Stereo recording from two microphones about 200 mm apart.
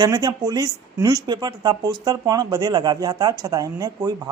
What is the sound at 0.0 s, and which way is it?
Speech, 20° right (ahead or behind).